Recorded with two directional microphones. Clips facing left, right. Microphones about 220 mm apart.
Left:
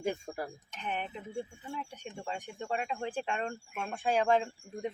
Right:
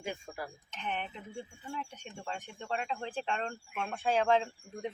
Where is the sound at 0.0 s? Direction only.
45° left (ahead or behind).